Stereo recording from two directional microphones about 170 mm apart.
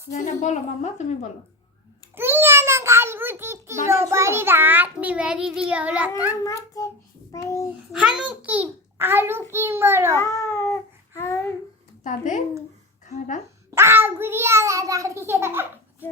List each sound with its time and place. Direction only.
0.1 s a woman's voice: 45° left (ahead or behind)
2.1 s a child's voice: 15° right (ahead or behind)
6.4 s a child's voice: 20° left (ahead or behind)
7.4 s cat: 20° left (ahead or behind)
7.9 s a child's voice: 5° right (ahead or behind)
10.2 s cat: 20° left (ahead or behind)
11.2 s babbling: 15° left (ahead or behind)
12.0 s a woman's voice: 45° left (ahead or behind)
13.7 s a child's voice: 15° right (ahead or behind)